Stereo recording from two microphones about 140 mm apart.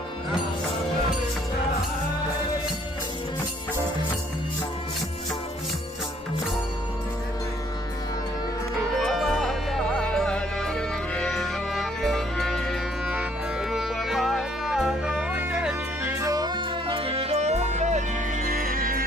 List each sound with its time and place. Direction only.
9.0 s music: centre (ahead or behind)
16.0 s music: 25° right (ahead or behind); by 18.0 s 55° right (ahead or behind)
18.4 s music: 80° right